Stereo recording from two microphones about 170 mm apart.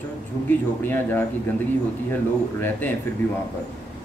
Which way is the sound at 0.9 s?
10° left (ahead or behind).